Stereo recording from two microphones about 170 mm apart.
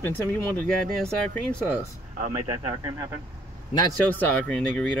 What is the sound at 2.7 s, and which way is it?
Speech, 25° right (ahead or behind).